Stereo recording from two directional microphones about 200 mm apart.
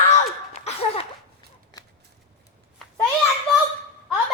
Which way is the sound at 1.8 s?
15° left (ahead or behind).